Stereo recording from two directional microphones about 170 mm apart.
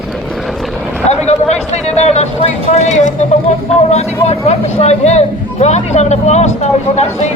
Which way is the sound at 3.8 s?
40° left (ahead or behind).